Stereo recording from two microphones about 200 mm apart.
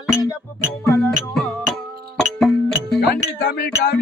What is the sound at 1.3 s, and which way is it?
Music, centre (ahead or behind).